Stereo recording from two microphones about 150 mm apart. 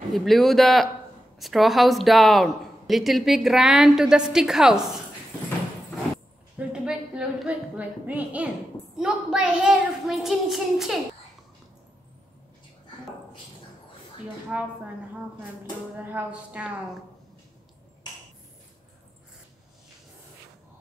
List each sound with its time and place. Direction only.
0.1 s speech: centre (ahead or behind)
6.7 s a sound: 5° right (ahead or behind)
8.9 s speech: 5° right (ahead or behind)
14.5 s music: 10° right (ahead or behind)
16.0 s music: 10° right (ahead or behind)